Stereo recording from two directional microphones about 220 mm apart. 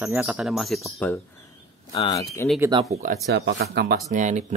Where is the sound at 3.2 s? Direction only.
50° right (ahead or behind).